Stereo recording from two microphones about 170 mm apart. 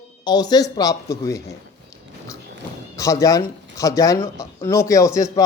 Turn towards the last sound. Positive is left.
turn(degrees=20)  # may be behind; listen again after turning